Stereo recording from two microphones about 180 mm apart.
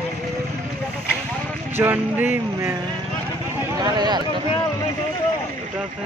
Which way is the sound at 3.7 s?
25° right (ahead or behind).